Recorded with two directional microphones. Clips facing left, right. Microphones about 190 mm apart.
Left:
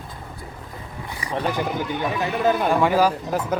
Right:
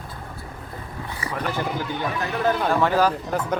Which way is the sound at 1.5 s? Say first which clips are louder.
Left 2 dB; 15° left (ahead or behind).